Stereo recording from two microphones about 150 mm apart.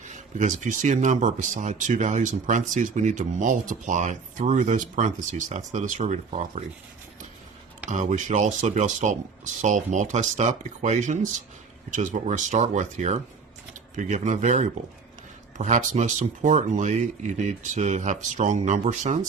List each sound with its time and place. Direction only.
0.0 s speech: 55° right (ahead or behind)
7.9 s speech: 55° right (ahead or behind)